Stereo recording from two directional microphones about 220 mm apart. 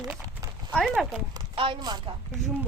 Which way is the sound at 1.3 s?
25° right (ahead or behind).